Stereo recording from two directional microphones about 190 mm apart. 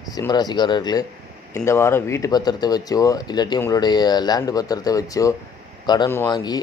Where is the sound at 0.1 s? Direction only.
20° left (ahead or behind).